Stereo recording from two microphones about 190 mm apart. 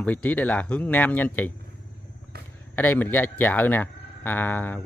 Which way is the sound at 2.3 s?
55° right (ahead or behind).